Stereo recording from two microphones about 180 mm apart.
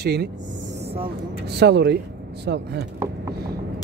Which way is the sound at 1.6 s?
70° right (ahead or behind).